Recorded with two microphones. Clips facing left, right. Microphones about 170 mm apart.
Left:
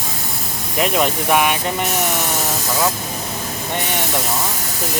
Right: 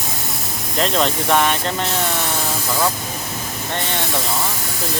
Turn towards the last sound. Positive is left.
turn(degrees=15)  # may be behind; listen again after turning